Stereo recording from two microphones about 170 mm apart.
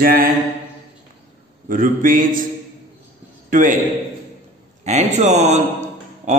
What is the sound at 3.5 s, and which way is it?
Speech, 50° right (ahead or behind).